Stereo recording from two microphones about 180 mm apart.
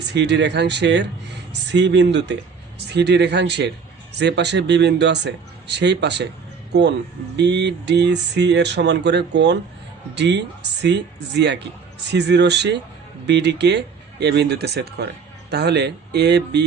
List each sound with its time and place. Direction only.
0.1 s speech: 70° right (ahead or behind)
7.3 s speech: 75° right (ahead or behind)